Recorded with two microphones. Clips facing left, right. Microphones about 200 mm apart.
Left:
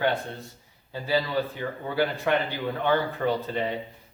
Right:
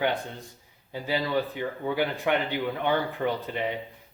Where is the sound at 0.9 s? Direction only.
15° right (ahead or behind).